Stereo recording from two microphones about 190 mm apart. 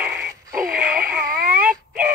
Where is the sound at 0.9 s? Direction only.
50° right (ahead or behind).